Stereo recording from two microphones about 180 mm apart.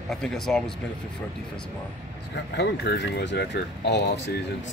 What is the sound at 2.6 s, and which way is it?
Speech, 70° left (ahead or behind).